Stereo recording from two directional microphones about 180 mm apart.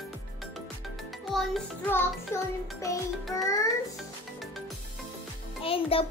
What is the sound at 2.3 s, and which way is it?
Child singing, 15° left (ahead or behind).